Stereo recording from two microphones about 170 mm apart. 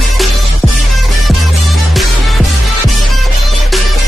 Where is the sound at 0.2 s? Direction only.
Centre (ahead or behind).